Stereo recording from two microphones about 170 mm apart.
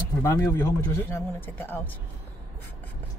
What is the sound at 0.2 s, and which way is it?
A man's voice, 20° left (ahead or behind).